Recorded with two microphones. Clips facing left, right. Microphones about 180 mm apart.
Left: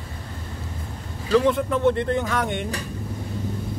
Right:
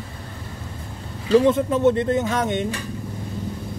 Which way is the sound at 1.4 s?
20° right (ahead or behind).